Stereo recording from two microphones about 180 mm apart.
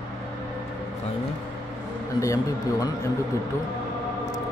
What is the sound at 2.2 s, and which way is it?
Speech, 15° left (ahead or behind).